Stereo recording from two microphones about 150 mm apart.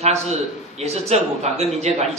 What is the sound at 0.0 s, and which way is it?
A man's voice, 45° right (ahead or behind).